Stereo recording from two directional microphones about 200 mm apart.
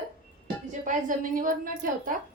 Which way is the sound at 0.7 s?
40° right (ahead or behind).